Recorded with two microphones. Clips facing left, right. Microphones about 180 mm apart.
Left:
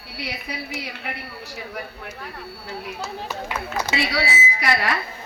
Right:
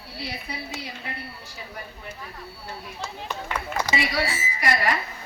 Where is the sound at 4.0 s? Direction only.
80° left.